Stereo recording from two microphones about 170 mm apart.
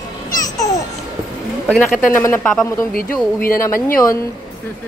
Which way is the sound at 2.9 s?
55° left (ahead or behind).